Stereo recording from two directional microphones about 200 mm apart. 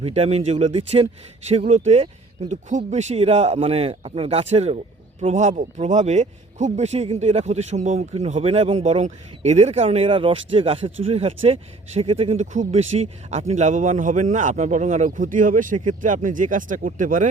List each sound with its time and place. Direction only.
0.0 s a man's voice: 30° right (ahead or behind)